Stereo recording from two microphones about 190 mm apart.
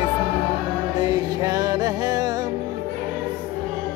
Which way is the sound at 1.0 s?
20° right (ahead or behind).